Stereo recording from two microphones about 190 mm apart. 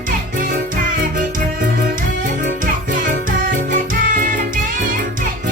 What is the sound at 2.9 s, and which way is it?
Music, 45° right (ahead or behind).